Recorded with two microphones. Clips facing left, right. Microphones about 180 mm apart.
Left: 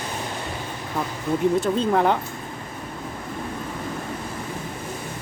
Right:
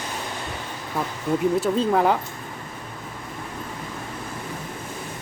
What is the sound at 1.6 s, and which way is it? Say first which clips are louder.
Speech: even; centre (ahead or behind).